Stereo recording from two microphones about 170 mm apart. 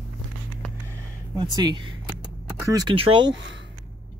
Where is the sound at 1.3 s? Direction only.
25° right (ahead or behind).